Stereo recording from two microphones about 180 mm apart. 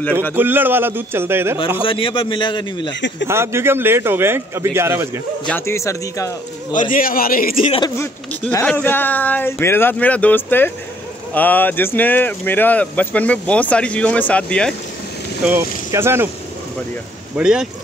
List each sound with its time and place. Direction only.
0.3 s a man's voice: 10° right (ahead or behind)
1.8 s a man's voice: 30° left (ahead or behind)
2.9 s a man's voice: 85° left
3.3 s a man's voice: 15° right (ahead or behind)
5.5 s speech: 15° left (ahead or behind)
6.7 s a man's voice: 45° left (ahead or behind)
7.8 s speech: 10° left (ahead or behind)
15.9 s a man's voice: 15° right (ahead or behind)
17.4 s speech: 5° right (ahead or behind)